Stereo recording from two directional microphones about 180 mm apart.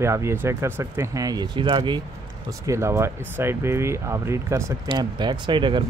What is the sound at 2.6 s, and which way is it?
Speech, 15° right (ahead or behind).